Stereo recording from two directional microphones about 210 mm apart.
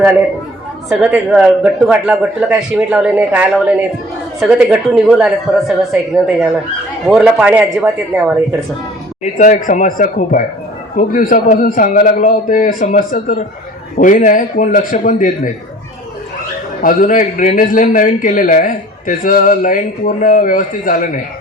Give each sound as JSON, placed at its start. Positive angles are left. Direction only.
{"t": 0.9, "sound": "a man's voice", "side_deg": -5}
{"t": 9.4, "sound": "a man's voice", "side_deg": 40}
{"t": 16.8, "sound": "a man's voice", "side_deg": 40}